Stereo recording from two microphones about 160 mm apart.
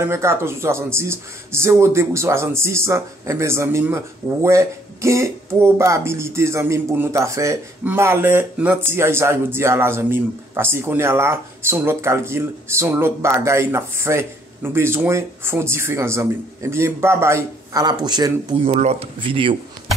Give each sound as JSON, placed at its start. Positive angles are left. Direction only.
{"t": 0.0, "sound": "speech", "side_deg": -15}
{"t": 18.7, "sound": "speech", "side_deg": -40}